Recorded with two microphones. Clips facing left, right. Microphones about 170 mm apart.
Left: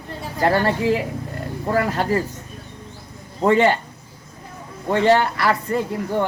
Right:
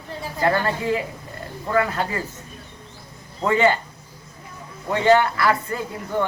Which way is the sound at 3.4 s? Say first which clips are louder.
Left 3 dB; 30° left (ahead or behind).